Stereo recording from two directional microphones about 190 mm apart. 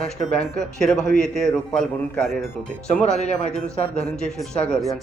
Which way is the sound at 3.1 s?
35° left (ahead or behind).